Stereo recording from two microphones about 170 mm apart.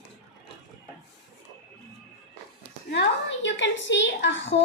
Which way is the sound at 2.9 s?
85° left.